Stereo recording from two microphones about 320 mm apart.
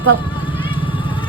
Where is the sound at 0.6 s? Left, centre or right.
Centre.